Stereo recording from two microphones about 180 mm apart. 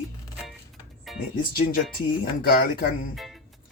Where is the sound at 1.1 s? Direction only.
Centre (ahead or behind).